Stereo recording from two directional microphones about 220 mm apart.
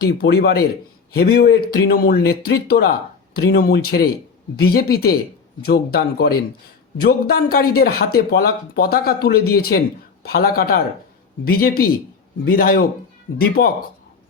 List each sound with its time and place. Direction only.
0.0 s speech: 45° left (ahead or behind)